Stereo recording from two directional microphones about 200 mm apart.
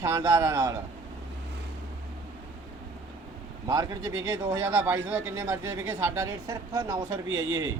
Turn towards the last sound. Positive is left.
turn(degrees=-15)  # may be behind; listen again after turning